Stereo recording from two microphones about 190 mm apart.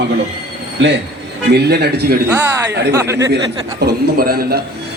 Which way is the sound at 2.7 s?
60° right (ahead or behind).